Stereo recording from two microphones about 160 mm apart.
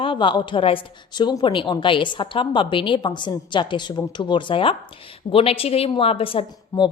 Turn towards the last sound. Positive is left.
turn(degrees=30)  # may be behind; listen again after turning